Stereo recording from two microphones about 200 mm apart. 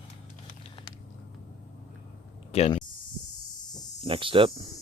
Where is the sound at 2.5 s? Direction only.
30° left (ahead or behind).